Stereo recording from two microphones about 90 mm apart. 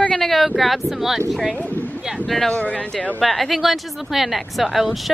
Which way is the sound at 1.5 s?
15° left (ahead or behind).